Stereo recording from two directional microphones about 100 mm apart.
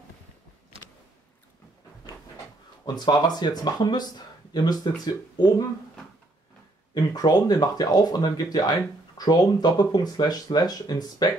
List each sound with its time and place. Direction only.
3.1 s speech: 45° left (ahead or behind)
6.9 s speech: 40° left (ahead or behind)